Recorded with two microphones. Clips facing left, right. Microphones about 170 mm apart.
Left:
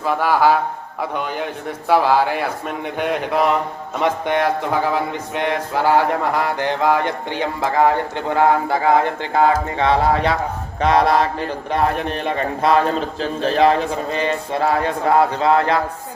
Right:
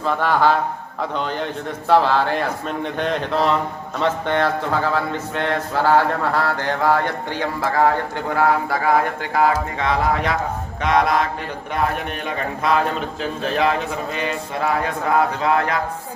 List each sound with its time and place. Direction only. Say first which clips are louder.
0.0 s a man's voice: left 2 dB; 10° left (ahead or behind); by 15.8 s 30° left (ahead or behind)